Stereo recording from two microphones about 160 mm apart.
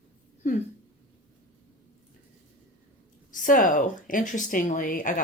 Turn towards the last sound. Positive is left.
turn(degrees=55)  # may be behind; listen again after turning